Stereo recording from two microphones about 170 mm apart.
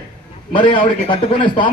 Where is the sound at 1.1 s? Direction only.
30° left (ahead or behind).